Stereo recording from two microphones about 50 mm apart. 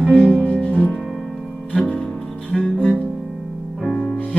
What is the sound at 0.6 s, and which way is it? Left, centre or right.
Music, left.